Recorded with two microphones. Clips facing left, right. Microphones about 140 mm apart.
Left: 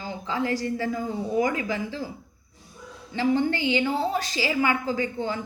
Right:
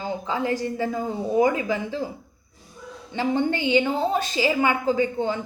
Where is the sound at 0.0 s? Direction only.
20° right (ahead or behind).